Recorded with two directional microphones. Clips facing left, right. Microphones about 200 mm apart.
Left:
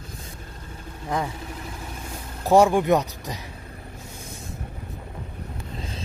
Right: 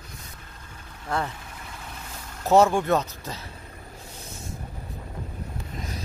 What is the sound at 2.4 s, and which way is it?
Speech, 15° left (ahead or behind).